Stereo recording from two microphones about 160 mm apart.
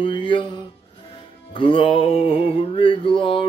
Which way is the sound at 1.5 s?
30° left (ahead or behind).